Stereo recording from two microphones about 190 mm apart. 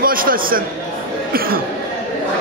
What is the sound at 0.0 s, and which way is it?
A man's voice, 50° right (ahead or behind).